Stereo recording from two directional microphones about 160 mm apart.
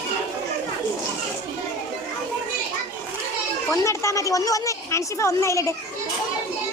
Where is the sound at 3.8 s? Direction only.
15° left (ahead or behind).